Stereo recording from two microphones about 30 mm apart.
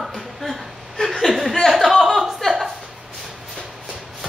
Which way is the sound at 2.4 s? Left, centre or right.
Left.